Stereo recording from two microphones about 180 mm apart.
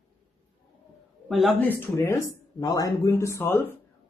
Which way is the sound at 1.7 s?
15° left (ahead or behind).